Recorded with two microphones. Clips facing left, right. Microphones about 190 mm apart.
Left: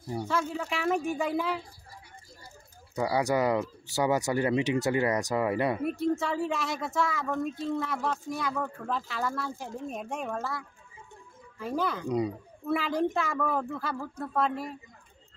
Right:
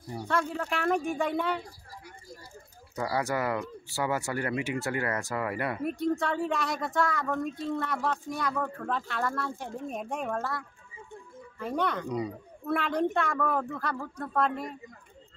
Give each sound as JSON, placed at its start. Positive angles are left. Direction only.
{"t": 0.2, "sound": "speech", "side_deg": 0}
{"t": 3.0, "sound": "speech", "side_deg": 15}
{"t": 5.9, "sound": "speech", "side_deg": 0}
{"t": 11.6, "sound": "speech", "side_deg": 5}